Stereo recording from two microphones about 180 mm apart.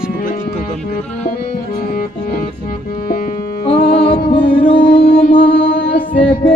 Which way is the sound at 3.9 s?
30° left (ahead or behind).